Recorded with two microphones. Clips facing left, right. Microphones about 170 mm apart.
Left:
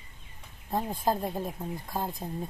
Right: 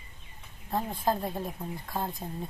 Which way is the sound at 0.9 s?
10° left (ahead or behind).